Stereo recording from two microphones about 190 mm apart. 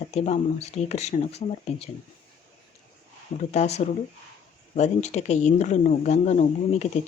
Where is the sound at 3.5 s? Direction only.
35° left (ahead or behind).